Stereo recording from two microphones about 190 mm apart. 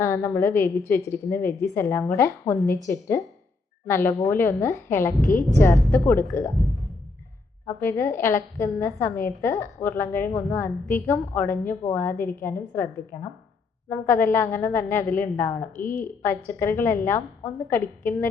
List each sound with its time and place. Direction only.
0.0 s a woman's voice: 15° left (ahead or behind)
7.8 s a woman's voice: 10° left (ahead or behind)